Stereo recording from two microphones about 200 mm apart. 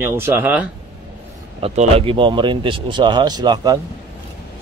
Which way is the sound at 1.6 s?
30° right (ahead or behind).